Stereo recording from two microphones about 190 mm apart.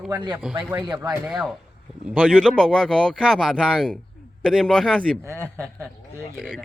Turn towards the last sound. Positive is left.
turn(degrees=0)  # may be behind; listen again after turning